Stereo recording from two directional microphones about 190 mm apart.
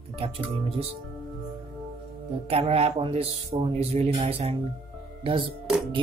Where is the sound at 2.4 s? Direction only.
30° right (ahead or behind).